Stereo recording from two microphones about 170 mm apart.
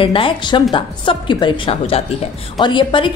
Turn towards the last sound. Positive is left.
turn(degrees=30)  # may be behind; listen again after turning